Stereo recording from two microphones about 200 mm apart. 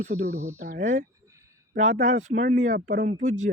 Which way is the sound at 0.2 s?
35° right (ahead or behind).